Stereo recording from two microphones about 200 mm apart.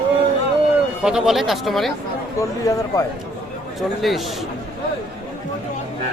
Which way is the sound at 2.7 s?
15° left (ahead or behind).